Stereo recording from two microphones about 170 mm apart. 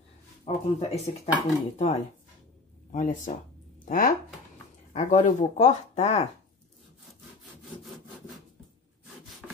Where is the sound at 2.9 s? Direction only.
50° left (ahead or behind).